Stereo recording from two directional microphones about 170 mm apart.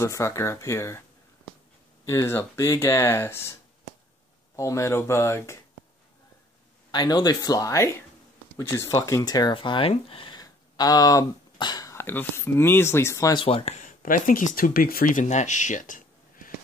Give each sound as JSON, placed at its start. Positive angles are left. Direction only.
{"t": 0.0, "sound": "speech", "side_deg": 15}
{"t": 2.0, "sound": "speech", "side_deg": 15}
{"t": 4.6, "sound": "speech", "side_deg": 15}
{"t": 6.9, "sound": "speech", "side_deg": 25}